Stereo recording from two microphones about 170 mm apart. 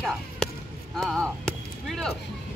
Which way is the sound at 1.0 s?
Centre (ahead or behind).